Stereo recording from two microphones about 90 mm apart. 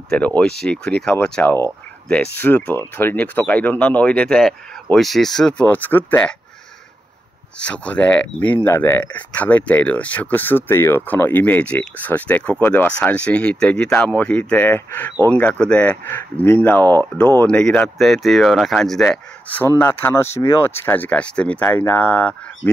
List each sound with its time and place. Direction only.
0.1 s speech: 15° left (ahead or behind)
4.9 s speech: 5° left (ahead or behind); by 6.3 s 20° left (ahead or behind)
7.5 s speech: 15° left (ahead or behind)
19.8 s speech: 25° left (ahead or behind)